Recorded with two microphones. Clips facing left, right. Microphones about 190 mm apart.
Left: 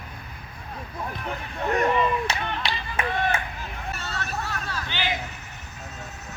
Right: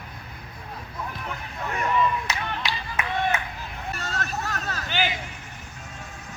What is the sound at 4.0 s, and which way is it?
Hubbub, 40° right (ahead or behind).